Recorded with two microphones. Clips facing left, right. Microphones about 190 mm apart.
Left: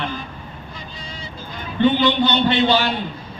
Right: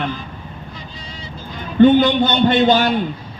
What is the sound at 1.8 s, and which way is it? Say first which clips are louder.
Speech: right 6 dB; 45° right (ahead or behind).